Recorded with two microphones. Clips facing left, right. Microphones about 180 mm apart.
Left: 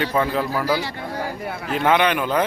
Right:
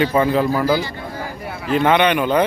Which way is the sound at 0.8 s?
70° left (ahead or behind).